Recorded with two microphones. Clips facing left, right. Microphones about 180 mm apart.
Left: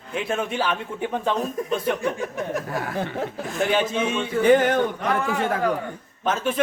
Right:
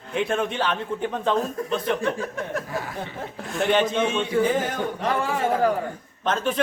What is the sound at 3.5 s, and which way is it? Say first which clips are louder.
Speech: right 1 dB; centre (ahead or behind).